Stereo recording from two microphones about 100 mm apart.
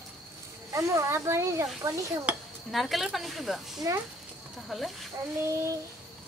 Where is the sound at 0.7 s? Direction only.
30° right (ahead or behind).